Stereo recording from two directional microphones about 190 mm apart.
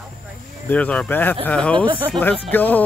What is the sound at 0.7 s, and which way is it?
Speech, 5° left (ahead or behind).